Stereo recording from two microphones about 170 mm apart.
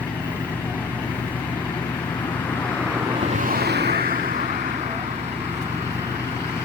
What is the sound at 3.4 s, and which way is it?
Vehicle, 70° right (ahead or behind).